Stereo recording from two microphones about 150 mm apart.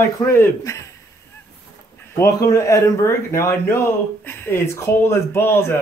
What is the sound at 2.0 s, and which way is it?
Speech, 15° left (ahead or behind).